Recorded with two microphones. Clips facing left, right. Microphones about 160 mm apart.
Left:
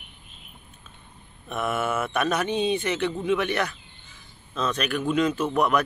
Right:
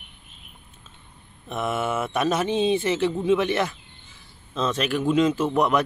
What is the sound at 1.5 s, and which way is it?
Speech, 20° right (ahead or behind).